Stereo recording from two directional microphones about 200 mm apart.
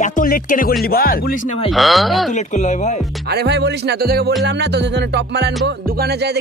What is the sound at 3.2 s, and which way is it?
Music, 55° right (ahead or behind).